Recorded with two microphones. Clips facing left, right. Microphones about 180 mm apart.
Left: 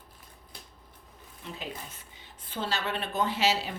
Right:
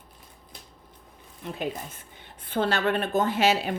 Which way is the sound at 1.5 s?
55° right (ahead or behind).